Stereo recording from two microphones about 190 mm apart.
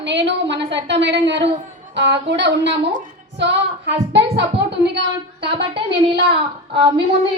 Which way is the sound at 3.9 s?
65° right (ahead or behind).